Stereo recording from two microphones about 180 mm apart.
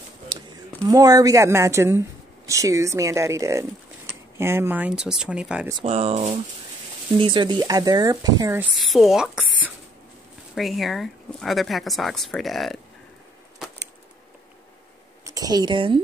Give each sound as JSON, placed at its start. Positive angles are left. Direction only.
{"t": 0.8, "sound": "speech", "side_deg": -20}
{"t": 5.9, "sound": "speech", "side_deg": -35}
{"t": 8.6, "sound": "speech", "side_deg": 0}
{"t": 15.2, "sound": "speech", "side_deg": -20}